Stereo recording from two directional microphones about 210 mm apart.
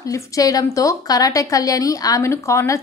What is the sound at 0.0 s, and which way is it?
A woman's voice, 15° left (ahead or behind).